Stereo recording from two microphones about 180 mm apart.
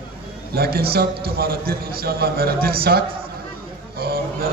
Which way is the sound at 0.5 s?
60° right (ahead or behind).